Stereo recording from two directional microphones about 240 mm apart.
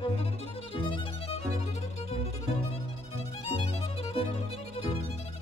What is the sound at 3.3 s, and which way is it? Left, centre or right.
Music, left.